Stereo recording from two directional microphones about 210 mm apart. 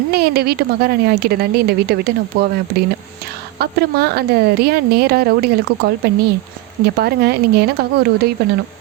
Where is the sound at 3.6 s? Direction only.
50° right (ahead or behind).